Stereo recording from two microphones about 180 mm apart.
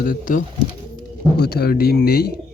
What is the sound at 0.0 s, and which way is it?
Speech, 50° left (ahead or behind).